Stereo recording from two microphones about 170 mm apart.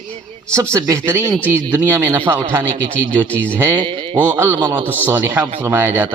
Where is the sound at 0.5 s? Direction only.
15° right (ahead or behind).